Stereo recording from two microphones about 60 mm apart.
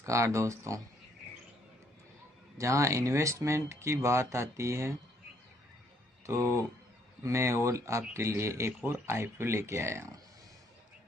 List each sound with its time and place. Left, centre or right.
0.0 s speech: right
2.5 s speech: right
6.2 s speech: right